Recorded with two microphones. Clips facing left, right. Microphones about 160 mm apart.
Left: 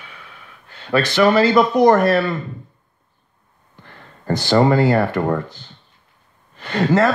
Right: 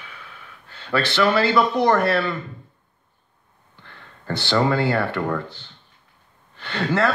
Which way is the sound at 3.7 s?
15° left (ahead or behind).